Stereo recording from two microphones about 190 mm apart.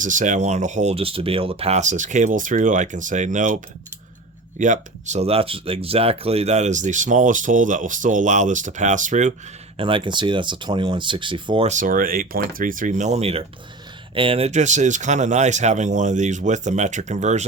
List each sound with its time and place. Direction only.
0.0 s speech: 40° right (ahead or behind)
9.7 s speech: 25° right (ahead or behind)
11.7 s speech: 45° right (ahead or behind)